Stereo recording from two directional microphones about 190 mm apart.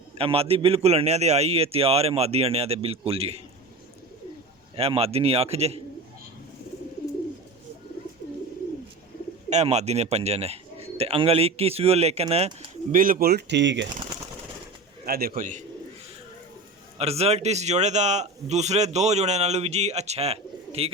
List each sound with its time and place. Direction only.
0.2 s a man's voice: 30° right (ahead or behind)
4.8 s a man's voice: 30° right (ahead or behind)
9.5 s a man's voice: 35° right (ahead or behind)
12.9 s speech: 45° right (ahead or behind); by 13.8 s 70° right (ahead or behind)
15.0 s speech: 50° right (ahead or behind)
17.0 s a man's voice: 35° right (ahead or behind)